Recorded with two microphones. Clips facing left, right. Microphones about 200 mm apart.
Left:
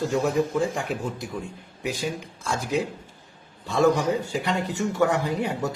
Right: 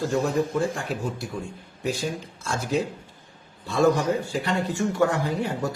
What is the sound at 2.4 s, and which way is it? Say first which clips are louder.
A man's voice: even; 15° left (ahead or behind).